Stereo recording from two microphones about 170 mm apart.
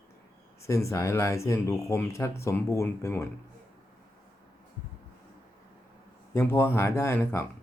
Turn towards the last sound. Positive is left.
turn(degrees=15)  # may be behind; listen again after turning